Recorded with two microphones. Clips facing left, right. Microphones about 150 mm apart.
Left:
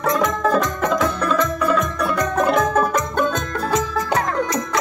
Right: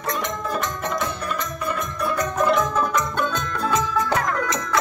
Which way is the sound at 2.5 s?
50° left (ahead or behind).